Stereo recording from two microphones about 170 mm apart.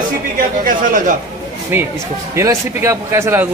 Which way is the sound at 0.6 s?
50° right (ahead or behind).